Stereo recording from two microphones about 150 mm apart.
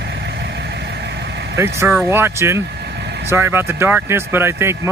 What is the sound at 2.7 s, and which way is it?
Vehicle, 90° right.